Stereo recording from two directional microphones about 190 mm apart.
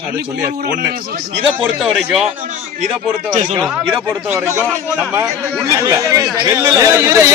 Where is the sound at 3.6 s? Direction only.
5° right (ahead or behind).